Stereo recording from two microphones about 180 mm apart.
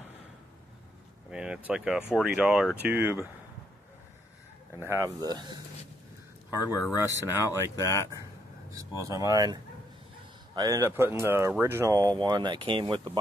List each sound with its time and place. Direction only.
1.3 s speech: 5° right (ahead or behind)
4.7 s speech: 15° right (ahead or behind)
6.5 s speech: 20° left (ahead or behind)
7.2 s speech: 15° right (ahead or behind)
7.7 s speech: 15° left (ahead or behind)
9.0 s speech: 20° right (ahead or behind)